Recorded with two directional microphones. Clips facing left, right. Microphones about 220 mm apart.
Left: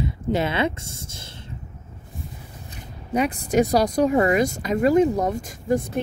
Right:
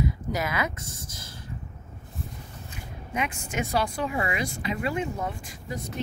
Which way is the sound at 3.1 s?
35° left (ahead or behind).